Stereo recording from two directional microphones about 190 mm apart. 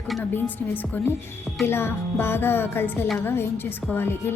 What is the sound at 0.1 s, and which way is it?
A woman's voice, 10° left (ahead or behind).